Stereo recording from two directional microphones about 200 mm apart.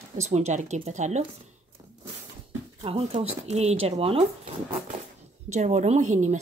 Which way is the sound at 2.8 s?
30° right (ahead or behind).